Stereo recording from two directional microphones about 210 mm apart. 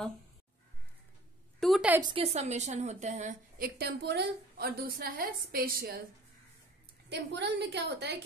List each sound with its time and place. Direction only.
1.6 s a sound: centre (ahead or behind)
2.0 s a woman's voice: 25° right (ahead or behind); by 5.9 s 45° right (ahead or behind)
7.1 s a woman's voice: 55° right (ahead or behind)